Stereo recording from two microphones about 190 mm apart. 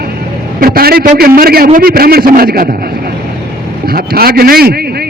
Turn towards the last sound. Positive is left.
turn(degrees=-55)  # may be behind; listen again after turning